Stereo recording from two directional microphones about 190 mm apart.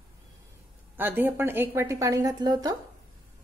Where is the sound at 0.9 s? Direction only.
10° right (ahead or behind).